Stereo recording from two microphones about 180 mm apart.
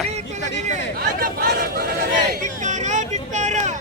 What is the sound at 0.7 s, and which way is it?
Speech, 50° right (ahead or behind).